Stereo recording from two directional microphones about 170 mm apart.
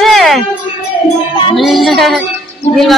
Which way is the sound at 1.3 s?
25° left (ahead or behind).